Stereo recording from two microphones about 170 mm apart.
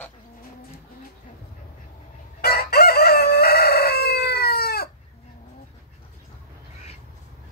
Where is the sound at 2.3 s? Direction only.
65° left (ahead or behind).